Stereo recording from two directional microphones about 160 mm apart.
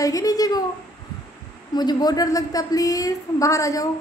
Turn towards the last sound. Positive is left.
turn(degrees=20)  # may be behind; listen again after turning